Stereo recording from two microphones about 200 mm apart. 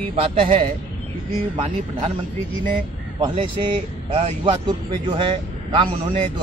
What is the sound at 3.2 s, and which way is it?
Speech, 25° right (ahead or behind).